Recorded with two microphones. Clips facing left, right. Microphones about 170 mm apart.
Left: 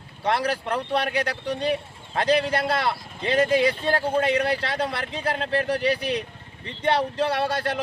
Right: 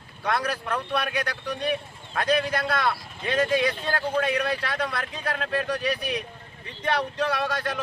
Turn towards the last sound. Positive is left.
turn(degrees=30)  # may be behind; listen again after turning